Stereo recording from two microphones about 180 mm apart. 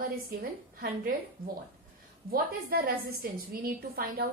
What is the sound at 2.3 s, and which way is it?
A woman's voice, 55° right (ahead or behind).